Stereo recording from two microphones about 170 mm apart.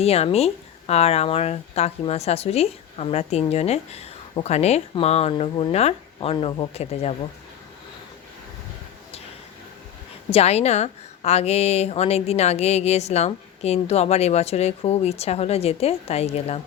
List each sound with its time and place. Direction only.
0.0 s speech: 35° left (ahead or behind)
10.2 s speech: 35° left (ahead or behind)